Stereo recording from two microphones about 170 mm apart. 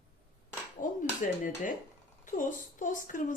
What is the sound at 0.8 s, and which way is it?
Cutlery, 50° left (ahead or behind).